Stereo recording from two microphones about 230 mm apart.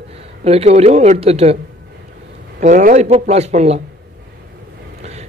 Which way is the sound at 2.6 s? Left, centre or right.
Right.